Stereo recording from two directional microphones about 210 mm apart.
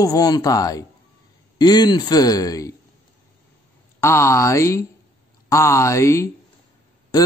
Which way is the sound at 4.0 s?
15° left (ahead or behind).